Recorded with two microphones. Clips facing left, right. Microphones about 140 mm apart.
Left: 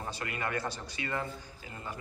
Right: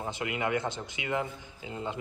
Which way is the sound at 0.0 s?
15° right (ahead or behind).